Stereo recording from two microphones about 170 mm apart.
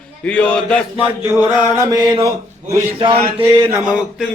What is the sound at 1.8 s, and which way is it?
Mantra, 20° right (ahead or behind).